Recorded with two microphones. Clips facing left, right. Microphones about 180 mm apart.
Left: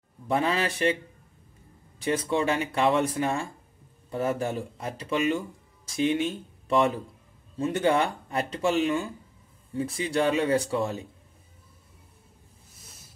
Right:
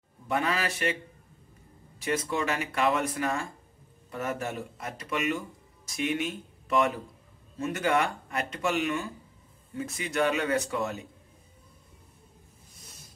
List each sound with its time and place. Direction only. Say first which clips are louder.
0.3 s speech: left 3 dB; 30° left (ahead or behind)
2.0 s speech: left 3 dB; 30° left (ahead or behind)